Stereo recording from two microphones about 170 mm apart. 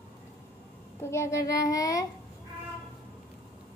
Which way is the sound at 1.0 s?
15° left (ahead or behind).